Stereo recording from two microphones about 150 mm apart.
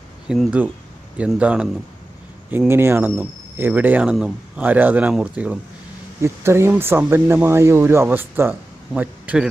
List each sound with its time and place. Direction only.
0.3 s a man's voice: 10° right (ahead or behind)